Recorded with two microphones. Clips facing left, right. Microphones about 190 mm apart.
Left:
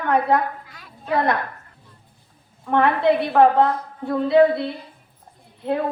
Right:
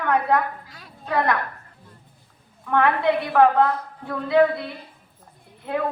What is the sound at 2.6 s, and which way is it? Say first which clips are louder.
Speech: left 2 dB; 30° left (ahead or behind).